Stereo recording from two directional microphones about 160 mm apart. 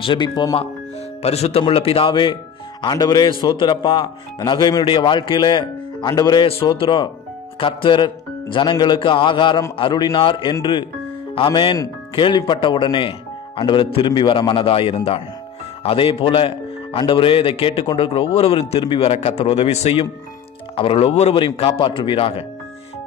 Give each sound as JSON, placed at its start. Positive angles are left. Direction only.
{"t": 0.0, "sound": "speech", "side_deg": 30}
{"t": 1.2, "sound": "a man's voice", "side_deg": 40}
{"t": 6.4, "sound": "a man's voice", "side_deg": 35}